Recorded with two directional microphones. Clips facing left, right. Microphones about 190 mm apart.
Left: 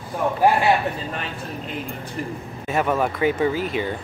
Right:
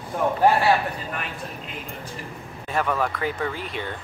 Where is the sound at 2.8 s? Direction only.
15° left (ahead or behind).